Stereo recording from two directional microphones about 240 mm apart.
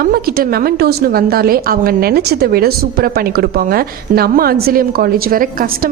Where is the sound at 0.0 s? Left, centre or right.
Right.